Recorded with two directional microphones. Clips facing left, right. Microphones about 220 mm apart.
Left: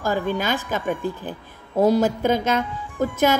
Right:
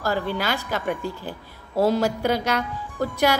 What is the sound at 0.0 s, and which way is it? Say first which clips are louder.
A woman's voice: left 2 dB; 15° left (ahead or behind).